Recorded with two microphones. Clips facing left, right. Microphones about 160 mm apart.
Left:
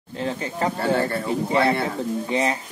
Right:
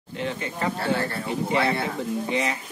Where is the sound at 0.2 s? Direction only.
35° left (ahead or behind).